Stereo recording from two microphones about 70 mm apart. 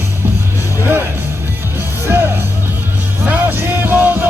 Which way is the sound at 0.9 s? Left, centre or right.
Right.